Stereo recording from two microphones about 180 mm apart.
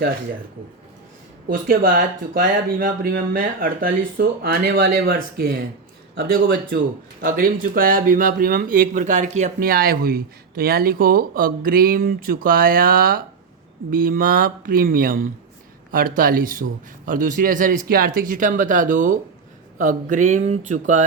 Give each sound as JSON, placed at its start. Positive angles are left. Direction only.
{"t": 1.5, "sound": "speech", "side_deg": -55}